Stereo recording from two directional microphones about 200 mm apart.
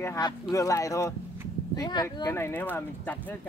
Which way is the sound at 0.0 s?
15° left (ahead or behind).